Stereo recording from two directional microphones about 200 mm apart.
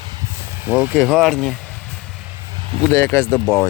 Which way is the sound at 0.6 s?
10° right (ahead or behind).